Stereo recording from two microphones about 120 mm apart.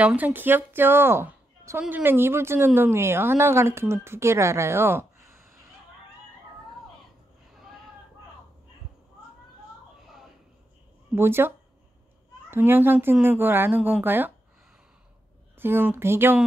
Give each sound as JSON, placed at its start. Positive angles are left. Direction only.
{"t": 0.0, "sound": "a woman's voice", "side_deg": -15}
{"t": 11.1, "sound": "a woman's voice", "side_deg": -20}
{"t": 15.5, "sound": "a woman's voice", "side_deg": -20}